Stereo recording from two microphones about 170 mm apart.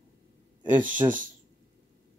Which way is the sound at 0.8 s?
10° right (ahead or behind).